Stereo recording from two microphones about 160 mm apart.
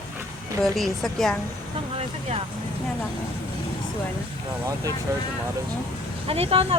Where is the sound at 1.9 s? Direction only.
35° right (ahead or behind).